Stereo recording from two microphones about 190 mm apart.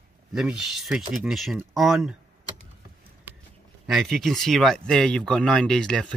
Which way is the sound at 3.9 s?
Centre (ahead or behind).